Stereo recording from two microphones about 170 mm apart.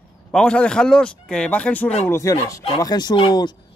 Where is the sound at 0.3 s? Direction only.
5° left (ahead or behind).